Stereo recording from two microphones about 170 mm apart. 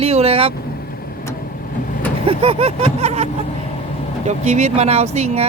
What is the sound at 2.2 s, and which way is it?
Speech, 35° right (ahead or behind).